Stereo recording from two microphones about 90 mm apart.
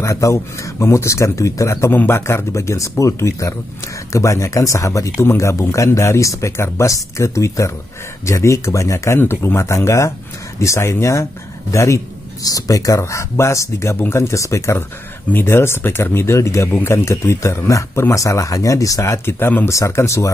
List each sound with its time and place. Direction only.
0.0 s speech: 35° left (ahead or behind)